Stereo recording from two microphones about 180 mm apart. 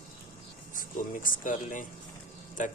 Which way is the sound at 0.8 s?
50° left (ahead or behind).